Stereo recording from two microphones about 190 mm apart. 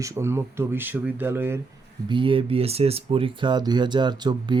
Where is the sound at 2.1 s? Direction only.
25° right (ahead or behind).